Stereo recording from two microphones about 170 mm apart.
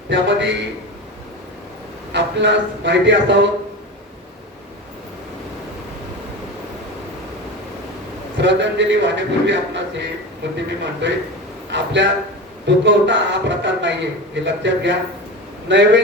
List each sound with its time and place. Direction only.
0.1 s a man's voice: 90° right
2.1 s a man's voice: 90° right
8.4 s a man's voice: 90° right